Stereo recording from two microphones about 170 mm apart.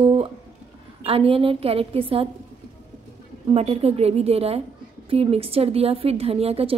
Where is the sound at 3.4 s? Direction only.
35° right (ahead or behind).